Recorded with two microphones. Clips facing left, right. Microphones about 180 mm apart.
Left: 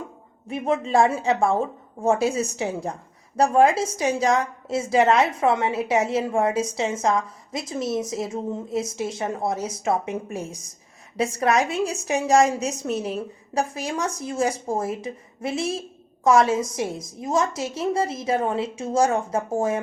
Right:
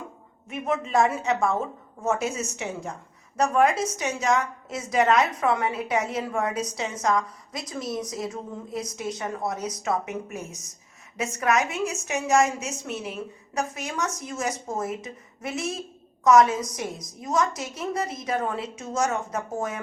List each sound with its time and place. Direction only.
0.4 s a woman's voice: 30° left (ahead or behind)